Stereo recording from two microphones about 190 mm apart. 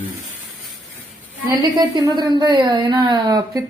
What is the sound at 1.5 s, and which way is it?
A woman's voice, 20° right (ahead or behind).